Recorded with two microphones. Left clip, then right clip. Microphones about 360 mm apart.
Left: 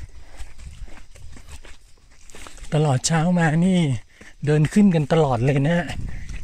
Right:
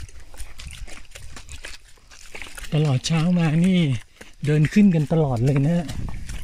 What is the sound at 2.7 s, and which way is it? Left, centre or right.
Speech, left.